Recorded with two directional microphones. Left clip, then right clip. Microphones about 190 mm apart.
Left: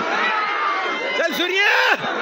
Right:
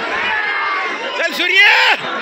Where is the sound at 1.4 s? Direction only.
50° left (ahead or behind).